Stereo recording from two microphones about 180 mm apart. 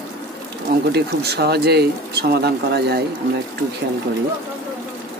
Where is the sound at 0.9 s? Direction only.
65° right (ahead or behind).